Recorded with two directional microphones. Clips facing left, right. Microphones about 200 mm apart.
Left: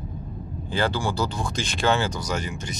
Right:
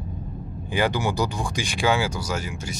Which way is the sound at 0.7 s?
15° right (ahead or behind).